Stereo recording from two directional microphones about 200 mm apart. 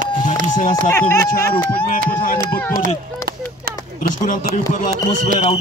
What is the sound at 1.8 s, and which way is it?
Speech, 45° left (ahead or behind).